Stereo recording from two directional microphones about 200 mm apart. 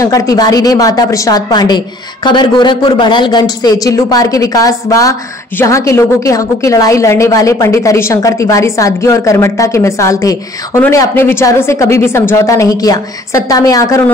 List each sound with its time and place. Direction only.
0.0 s a woman's voice: 15° left (ahead or behind)